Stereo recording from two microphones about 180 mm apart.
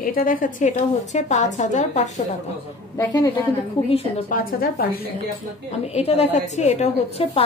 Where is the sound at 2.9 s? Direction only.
20° left (ahead or behind).